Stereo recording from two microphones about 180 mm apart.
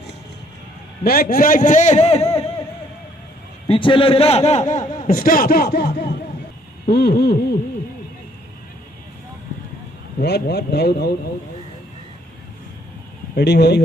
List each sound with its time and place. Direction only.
1.0 s a man's voice: 55° left (ahead or behind); by 2.6 s 35° left (ahead or behind)
3.6 s a man's voice: 30° left (ahead or behind); by 7.3 s 65° left (ahead or behind)
10.2 s speech: 65° left (ahead or behind)
13.4 s speech: 65° left (ahead or behind)